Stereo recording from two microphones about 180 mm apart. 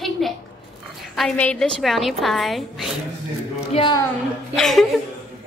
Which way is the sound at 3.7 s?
25° left (ahead or behind).